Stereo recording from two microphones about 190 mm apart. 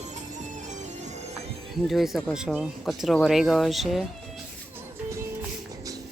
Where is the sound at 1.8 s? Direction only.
Centre (ahead or behind).